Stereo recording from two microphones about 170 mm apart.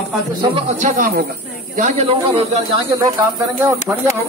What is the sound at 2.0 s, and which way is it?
Speech, 35° right (ahead or behind).